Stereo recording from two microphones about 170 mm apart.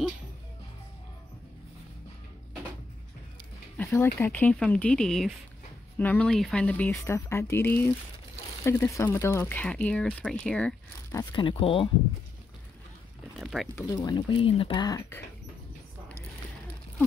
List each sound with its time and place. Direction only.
3.7 s speech: 15° left (ahead or behind)
11.1 s speech: 25° left (ahead or behind)
13.4 s a sound: centre (ahead or behind)
13.7 s speech: 20° left (ahead or behind)